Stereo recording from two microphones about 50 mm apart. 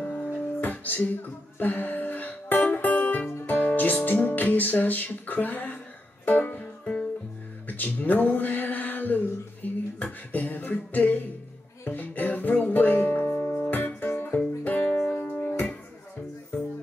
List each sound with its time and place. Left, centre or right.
0.6 s music: left
7.6 s a sound: left
11.8 s music: left
13.6 s music: left
15.0 s music: centre
15.3 s music: left